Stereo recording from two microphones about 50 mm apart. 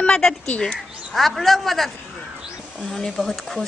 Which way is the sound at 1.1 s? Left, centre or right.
Centre.